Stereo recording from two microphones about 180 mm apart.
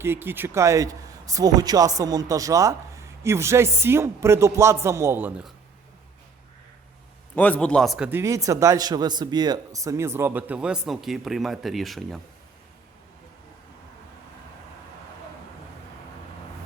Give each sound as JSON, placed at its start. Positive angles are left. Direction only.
{"t": 0.0, "sound": "speech", "side_deg": -10}
{"t": 7.3, "sound": "speech", "side_deg": 10}
{"t": 8.2, "sound": "speech", "side_deg": -20}